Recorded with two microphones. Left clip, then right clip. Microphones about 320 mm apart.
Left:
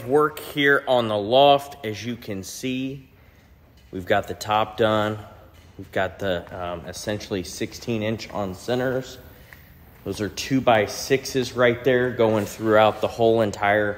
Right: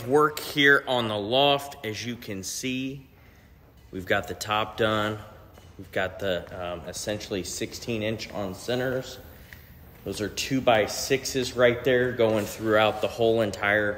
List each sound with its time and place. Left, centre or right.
0.1 s speech: centre